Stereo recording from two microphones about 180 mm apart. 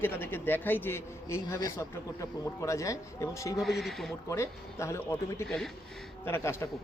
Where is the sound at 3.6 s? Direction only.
Centre (ahead or behind).